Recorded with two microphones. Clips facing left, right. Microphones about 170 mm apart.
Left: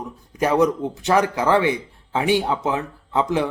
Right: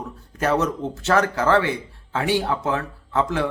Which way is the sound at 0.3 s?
15° left (ahead or behind).